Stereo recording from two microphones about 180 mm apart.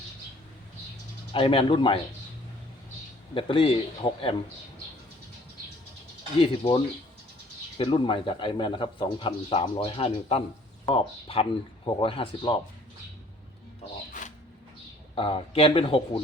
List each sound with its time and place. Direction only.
1.3 s speech: 30° left (ahead or behind)
3.3 s speech: 30° left (ahead or behind)
6.4 s speech: 30° left (ahead or behind)
14.1 s a sound: 45° left (ahead or behind)
15.1 s speech: 30° left (ahead or behind)